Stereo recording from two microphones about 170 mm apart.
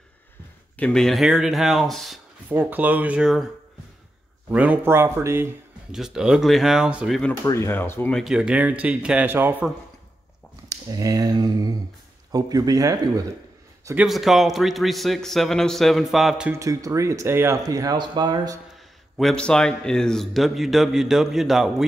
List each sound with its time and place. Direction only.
0.7 s a man's voice: 5° left (ahead or behind)
2.5 s speech: 10° right (ahead or behind)
4.5 s speech: 10° right (ahead or behind)
5.9 s a man's voice: 5° right (ahead or behind)
7.4 s speech: 15° left (ahead or behind)
8.2 s speech: 5° right (ahead or behind)
10.7 s speech: 20° right (ahead or behind)
13.9 s a man's voice: centre (ahead or behind)
16.5 s speech: 20° right (ahead or behind)
19.1 s a man's voice: 5° left (ahead or behind)